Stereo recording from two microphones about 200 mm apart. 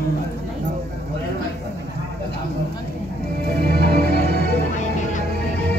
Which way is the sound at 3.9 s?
55° left (ahead or behind).